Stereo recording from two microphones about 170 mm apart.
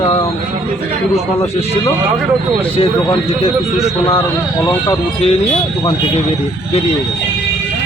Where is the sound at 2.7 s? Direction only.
35° left (ahead or behind).